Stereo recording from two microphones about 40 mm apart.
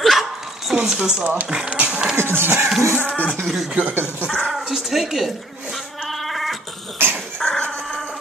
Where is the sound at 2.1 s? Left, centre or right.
Right.